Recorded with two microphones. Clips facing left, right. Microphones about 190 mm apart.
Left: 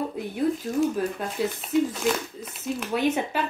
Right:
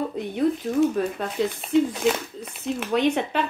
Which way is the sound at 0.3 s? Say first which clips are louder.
Right 3 dB; centre (ahead or behind).